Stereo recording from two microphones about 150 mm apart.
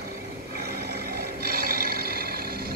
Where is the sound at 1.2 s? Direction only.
90° right.